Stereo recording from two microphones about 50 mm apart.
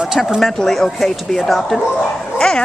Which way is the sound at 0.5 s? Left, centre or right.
Centre.